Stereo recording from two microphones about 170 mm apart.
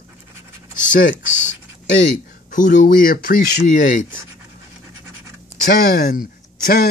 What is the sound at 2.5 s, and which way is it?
Speech, 50° left (ahead or behind).